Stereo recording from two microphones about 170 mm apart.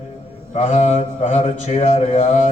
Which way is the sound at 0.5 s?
45° left (ahead or behind).